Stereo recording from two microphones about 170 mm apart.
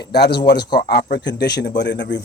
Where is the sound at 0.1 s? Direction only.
75° left (ahead or behind); by 2.2 s 90° left.